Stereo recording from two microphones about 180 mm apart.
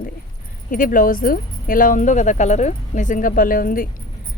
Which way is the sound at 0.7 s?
50° left (ahead or behind).